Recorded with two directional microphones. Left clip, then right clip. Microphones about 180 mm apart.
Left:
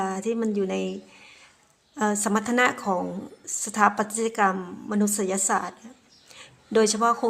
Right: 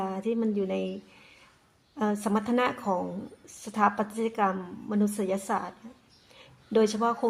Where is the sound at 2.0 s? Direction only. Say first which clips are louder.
Left 4 dB; 5° left (ahead or behind).